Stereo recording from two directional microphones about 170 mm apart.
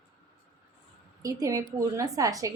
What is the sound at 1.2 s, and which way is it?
A woman's voice, 20° right (ahead or behind).